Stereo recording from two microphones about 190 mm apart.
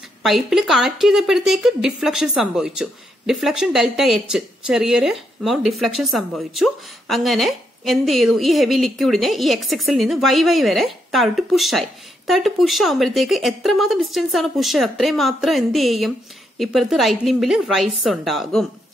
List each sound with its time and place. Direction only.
0.2 s a woman's voice: centre (ahead or behind)